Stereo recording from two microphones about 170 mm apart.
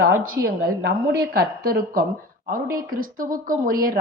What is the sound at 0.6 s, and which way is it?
A woman's voice, 70° right (ahead or behind).